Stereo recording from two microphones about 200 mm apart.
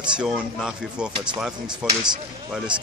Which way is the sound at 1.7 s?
20° right (ahead or behind).